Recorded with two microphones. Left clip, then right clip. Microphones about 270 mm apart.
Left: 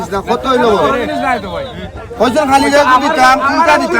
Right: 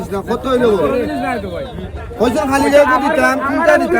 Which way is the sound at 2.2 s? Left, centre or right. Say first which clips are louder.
Left 5 dB; centre.